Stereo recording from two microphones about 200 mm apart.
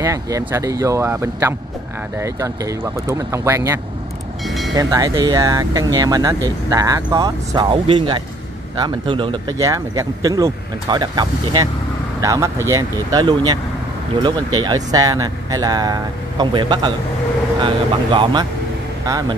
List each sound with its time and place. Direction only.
0.0 s speech: 15° right (ahead or behind)
4.5 s speech: centre (ahead or behind)
4.7 s speech: 20° right (ahead or behind)